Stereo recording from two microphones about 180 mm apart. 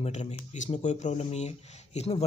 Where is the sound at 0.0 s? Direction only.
40° left (ahead or behind).